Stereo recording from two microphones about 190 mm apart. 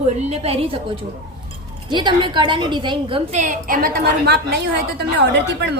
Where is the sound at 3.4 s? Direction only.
45° right (ahead or behind).